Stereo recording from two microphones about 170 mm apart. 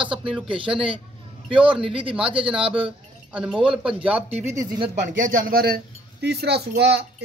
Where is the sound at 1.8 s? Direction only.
30° right (ahead or behind).